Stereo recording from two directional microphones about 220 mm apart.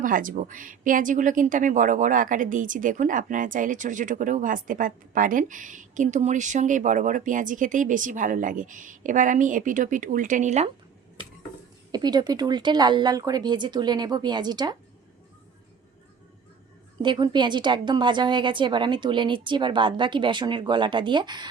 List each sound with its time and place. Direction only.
0.0 s speech: 40° right (ahead or behind)
11.9 s a woman's voice: 20° right (ahead or behind)
17.0 s a woman's voice: 20° right (ahead or behind)